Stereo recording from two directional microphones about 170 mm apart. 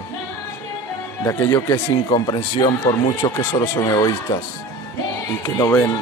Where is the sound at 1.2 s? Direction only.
15° left (ahead or behind).